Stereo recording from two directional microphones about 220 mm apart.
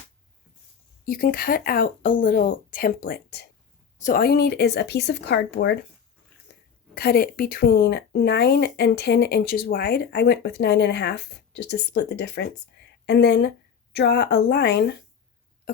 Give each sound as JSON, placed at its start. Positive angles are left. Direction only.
{"t": 1.0, "sound": "speech", "side_deg": 40}
{"t": 6.9, "sound": "speech", "side_deg": 45}